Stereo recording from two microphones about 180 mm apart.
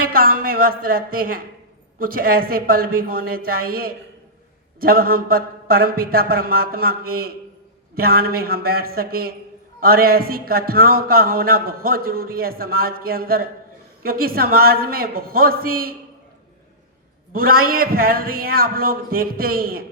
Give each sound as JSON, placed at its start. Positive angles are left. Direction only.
{"t": 0.0, "sound": "a woman's voice", "side_deg": -55}
{"t": 17.3, "sound": "a man's voice", "side_deg": -55}